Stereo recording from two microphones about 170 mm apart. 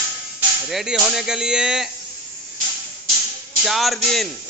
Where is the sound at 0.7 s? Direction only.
5° right (ahead or behind).